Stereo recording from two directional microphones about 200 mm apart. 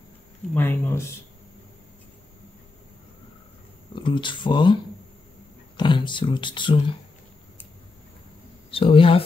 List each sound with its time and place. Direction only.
0.6 s speech: 10° left (ahead or behind)
3.9 s speech: 25° left (ahead or behind)
5.8 s speech: 25° left (ahead or behind)
8.6 s speech: 25° left (ahead or behind)